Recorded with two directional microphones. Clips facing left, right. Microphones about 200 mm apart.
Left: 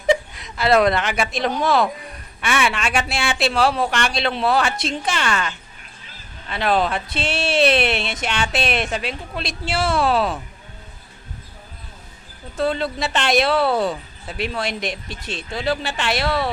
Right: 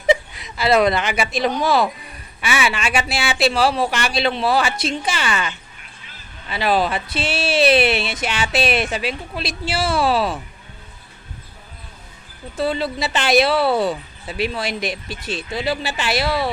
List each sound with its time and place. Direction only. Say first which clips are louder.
0.1 s speech: right 1 dB; 5° right (ahead or behind)
12.5 s speech: even; 5° right (ahead or behind)